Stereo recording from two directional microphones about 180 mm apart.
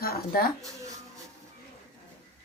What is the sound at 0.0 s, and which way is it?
Speech, 60° left (ahead or behind).